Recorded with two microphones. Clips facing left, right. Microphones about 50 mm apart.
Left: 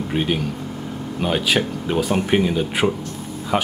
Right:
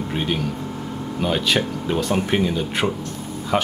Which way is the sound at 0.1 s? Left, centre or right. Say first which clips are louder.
Left 3 dB; centre.